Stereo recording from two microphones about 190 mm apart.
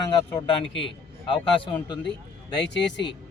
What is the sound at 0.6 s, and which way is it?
Speech, 70° left (ahead or behind).